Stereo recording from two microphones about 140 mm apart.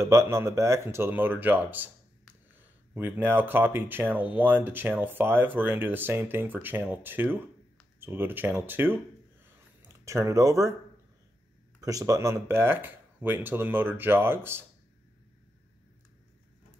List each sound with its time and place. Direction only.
0.0 s speech: 20° right (ahead or behind)
10.0 s speech: 20° right (ahead or behind)
11.8 s speech: 25° right (ahead or behind)